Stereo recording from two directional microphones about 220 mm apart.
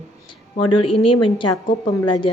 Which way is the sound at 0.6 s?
90° left.